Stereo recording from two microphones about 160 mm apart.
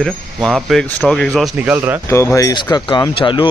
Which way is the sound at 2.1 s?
20° left (ahead or behind).